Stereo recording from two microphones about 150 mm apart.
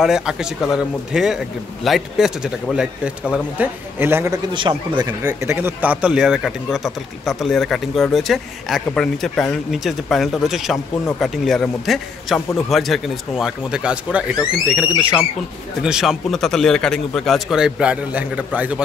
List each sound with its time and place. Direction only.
0.0 s a man's voice: 5° right (ahead or behind)
4.6 s speech: 30° right (ahead or behind)
5.2 s a man's voice: 15° right (ahead or behind)